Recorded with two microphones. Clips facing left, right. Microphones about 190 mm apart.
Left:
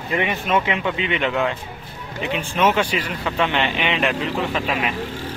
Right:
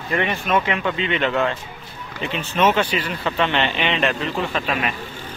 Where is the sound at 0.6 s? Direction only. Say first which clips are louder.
Even; 15° left (ahead or behind).